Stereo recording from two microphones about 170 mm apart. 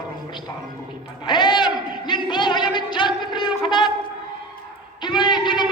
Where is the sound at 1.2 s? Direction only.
25° left (ahead or behind).